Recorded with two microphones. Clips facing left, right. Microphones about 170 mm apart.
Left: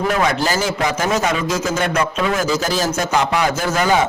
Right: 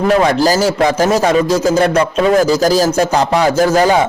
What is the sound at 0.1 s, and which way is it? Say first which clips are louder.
A man's voice: right 10 dB; 35° right (ahead or behind).